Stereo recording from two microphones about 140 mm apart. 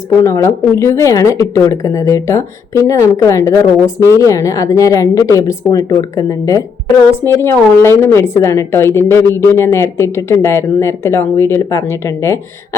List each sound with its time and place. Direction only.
0.2 s a woman's voice: 20° left (ahead or behind)